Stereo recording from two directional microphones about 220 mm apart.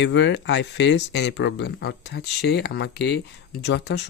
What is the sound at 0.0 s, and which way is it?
Speech, 55° left (ahead or behind).